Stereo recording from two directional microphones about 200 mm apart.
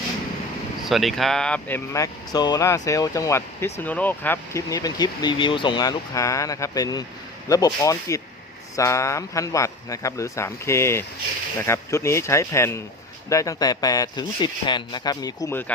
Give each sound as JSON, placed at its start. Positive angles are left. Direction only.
{"t": 0.9, "sound": "speech", "side_deg": 0}